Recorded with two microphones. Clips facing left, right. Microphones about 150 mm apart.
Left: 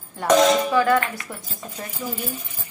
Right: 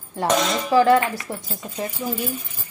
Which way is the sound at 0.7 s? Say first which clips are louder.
Right 3 dB; 30° right (ahead or behind).